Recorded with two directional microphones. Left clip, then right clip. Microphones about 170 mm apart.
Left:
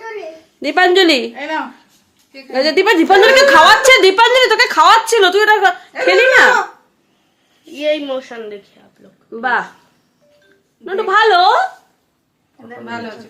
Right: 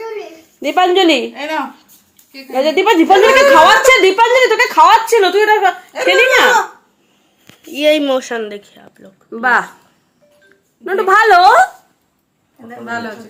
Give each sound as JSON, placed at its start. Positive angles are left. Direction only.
{"t": 0.6, "sound": "a woman's voice", "side_deg": 5}
{"t": 1.3, "sound": "a woman's voice", "side_deg": 0}
{"t": 7.7, "sound": "speech", "side_deg": -65}
{"t": 9.3, "sound": "speech", "side_deg": -35}
{"t": 10.8, "sound": "speech", "side_deg": -40}
{"t": 12.6, "sound": "a man's voice", "side_deg": -10}